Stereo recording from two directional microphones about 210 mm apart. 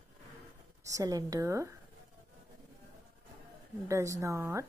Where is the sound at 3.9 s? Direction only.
15° right (ahead or behind).